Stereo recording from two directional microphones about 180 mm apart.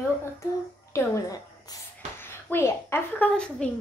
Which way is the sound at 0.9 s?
20° left (ahead or behind).